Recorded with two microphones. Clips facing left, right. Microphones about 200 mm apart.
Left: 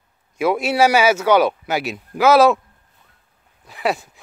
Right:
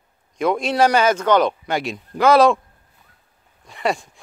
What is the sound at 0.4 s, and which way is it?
Speech, 5° left (ahead or behind).